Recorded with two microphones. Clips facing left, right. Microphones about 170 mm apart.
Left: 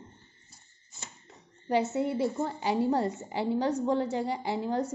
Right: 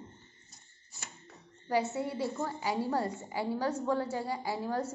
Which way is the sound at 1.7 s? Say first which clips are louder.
Left 4 dB; 20° left (ahead or behind).